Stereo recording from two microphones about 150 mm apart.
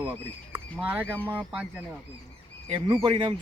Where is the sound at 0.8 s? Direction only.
10° right (ahead or behind).